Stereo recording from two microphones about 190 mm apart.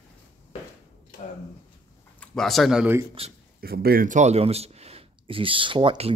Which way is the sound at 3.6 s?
55° right (ahead or behind).